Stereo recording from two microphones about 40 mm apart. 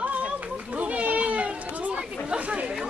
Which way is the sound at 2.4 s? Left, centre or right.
Right.